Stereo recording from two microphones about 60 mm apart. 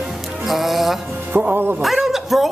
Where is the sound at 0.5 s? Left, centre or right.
Centre.